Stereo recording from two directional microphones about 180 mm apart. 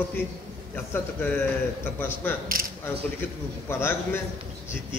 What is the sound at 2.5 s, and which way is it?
Speech, 50° right (ahead or behind).